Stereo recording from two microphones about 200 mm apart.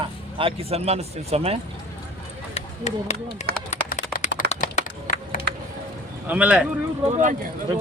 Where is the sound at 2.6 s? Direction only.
35° left (ahead or behind).